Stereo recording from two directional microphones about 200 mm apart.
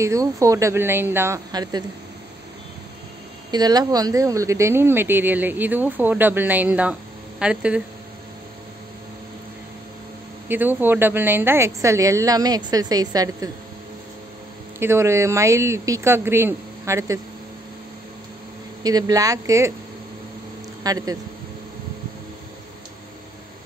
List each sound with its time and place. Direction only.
0.0 s speech: 15° right (ahead or behind)
3.5 s speech: 20° right (ahead or behind)
10.5 s speech: 10° right (ahead or behind)
14.8 s speech: 15° right (ahead or behind)
18.8 s speech: 20° right (ahead or behind)
20.8 s speech: 20° right (ahead or behind)